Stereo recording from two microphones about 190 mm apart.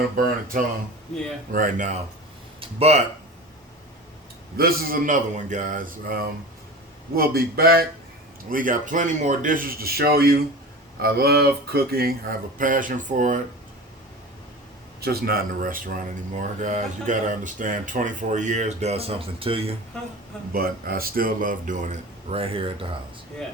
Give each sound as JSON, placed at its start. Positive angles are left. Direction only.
{"t": 0.2, "sound": "a man's voice", "side_deg": -50}
{"t": 2.6, "sound": "speech", "side_deg": -30}
{"t": 4.5, "sound": "a man's voice", "side_deg": -50}
{"t": 15.0, "sound": "speech", "side_deg": -55}
{"t": 20.5, "sound": "a man's voice", "side_deg": -50}